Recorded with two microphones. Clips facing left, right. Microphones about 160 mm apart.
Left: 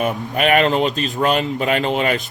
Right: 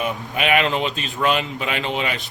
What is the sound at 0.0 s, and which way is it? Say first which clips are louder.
Speech: left 5 dB; 45° left (ahead or behind).